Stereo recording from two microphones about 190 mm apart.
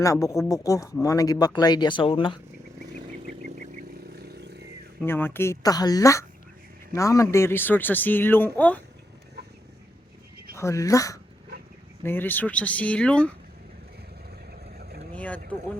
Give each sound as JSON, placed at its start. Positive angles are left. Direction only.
{"t": 0.0, "sound": "speech", "side_deg": 15}
{"t": 2.9, "sound": "vehicle", "side_deg": -40}
{"t": 4.1, "sound": "vehicle", "side_deg": -55}
{"t": 5.0, "sound": "speech", "side_deg": 10}
{"t": 10.5, "sound": "speech", "side_deg": 15}
{"t": 14.5, "sound": "boat", "side_deg": -55}
{"t": 15.1, "sound": "boat", "side_deg": 10}